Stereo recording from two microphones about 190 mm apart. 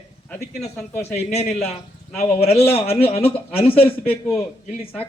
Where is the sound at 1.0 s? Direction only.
35° left (ahead or behind).